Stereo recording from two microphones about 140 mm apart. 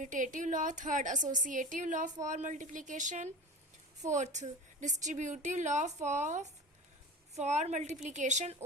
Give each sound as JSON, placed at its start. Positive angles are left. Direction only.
{"t": 0.0, "sound": "a woman's voice", "side_deg": -65}